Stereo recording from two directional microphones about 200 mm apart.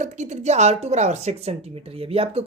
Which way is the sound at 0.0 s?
35° right (ahead or behind).